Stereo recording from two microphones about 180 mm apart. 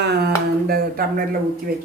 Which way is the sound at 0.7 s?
55° right (ahead or behind).